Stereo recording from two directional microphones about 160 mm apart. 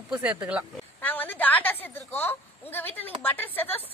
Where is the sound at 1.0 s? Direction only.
10° left (ahead or behind).